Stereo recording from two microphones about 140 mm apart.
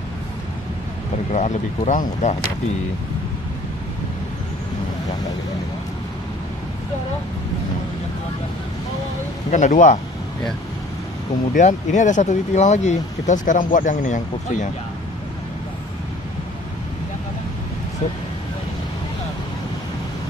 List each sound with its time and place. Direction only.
1.3 s speech: 60° left (ahead or behind)
9.5 s speech: 65° left (ahead or behind)
11.5 s speech: 60° left (ahead or behind)